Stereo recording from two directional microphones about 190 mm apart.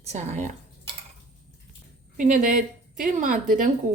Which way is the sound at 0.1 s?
40° right (ahead or behind).